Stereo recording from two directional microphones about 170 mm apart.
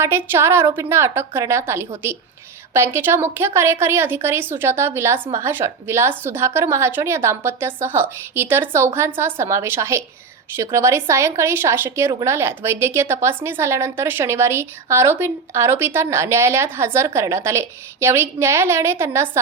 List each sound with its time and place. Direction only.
0.0 s a woman's voice: 15° right (ahead or behind)